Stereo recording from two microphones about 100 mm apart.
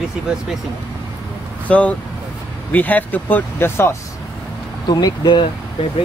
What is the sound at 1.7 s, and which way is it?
Speech, 15° left (ahead or behind).